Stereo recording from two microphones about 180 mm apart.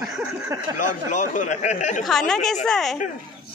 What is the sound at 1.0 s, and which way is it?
Speech, 45° left (ahead or behind).